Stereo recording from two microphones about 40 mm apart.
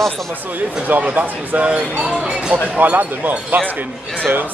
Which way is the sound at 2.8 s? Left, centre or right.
Right.